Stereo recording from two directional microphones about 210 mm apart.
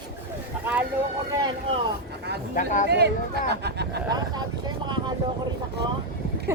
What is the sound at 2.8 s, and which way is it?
Speech, 50° right (ahead or behind).